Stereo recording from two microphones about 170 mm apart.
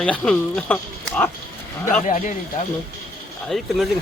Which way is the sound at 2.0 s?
45° left (ahead or behind).